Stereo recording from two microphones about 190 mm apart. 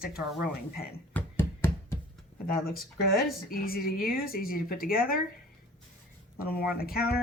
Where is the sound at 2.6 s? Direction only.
50° left (ahead or behind).